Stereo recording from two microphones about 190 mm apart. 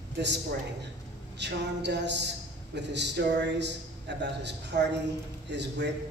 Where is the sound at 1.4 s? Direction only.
65° right (ahead or behind).